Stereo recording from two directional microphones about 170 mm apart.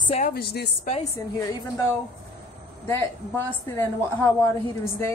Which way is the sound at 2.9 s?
15° left (ahead or behind).